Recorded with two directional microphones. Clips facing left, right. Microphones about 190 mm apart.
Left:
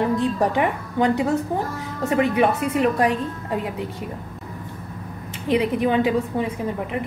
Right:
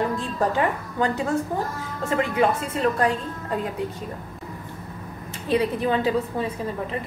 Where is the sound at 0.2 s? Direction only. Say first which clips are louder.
Left 3 dB; 20° left (ahead or behind).